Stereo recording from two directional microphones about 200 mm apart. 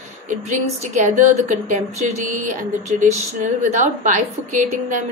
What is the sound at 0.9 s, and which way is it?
Speech, 40° right (ahead or behind).